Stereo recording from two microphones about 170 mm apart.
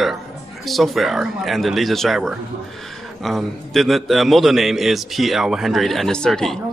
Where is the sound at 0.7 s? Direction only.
Centre (ahead or behind).